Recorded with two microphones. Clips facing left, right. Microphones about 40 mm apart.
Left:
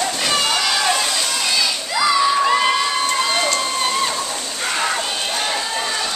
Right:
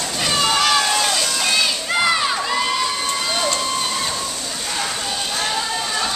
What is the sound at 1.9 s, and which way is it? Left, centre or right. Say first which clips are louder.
Children shouting: left 3 dB; right.